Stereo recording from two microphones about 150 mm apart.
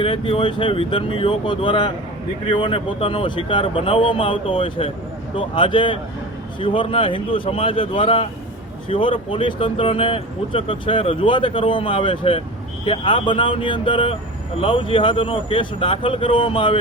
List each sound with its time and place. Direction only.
0.0 s speech: 35° left (ahead or behind)